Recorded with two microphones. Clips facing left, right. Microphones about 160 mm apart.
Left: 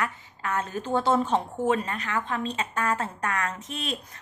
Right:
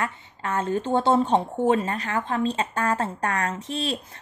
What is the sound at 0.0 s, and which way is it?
A woman's voice, 30° right (ahead or behind).